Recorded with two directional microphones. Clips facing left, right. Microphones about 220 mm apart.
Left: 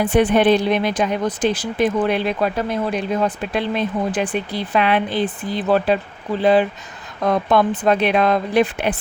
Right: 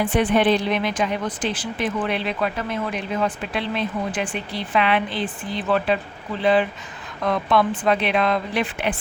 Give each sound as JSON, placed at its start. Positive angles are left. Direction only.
{"t": 0.0, "sound": "speech", "side_deg": 40}